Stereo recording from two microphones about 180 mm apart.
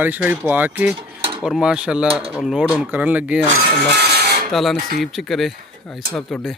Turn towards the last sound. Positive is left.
turn(degrees=0)  # may be behind; listen again after turning